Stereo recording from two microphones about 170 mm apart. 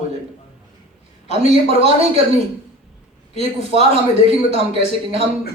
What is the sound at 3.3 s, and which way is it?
Speech, 35° right (ahead or behind).